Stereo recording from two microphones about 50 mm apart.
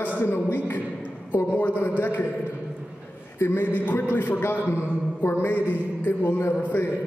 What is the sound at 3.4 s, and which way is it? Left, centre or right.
Speech, left.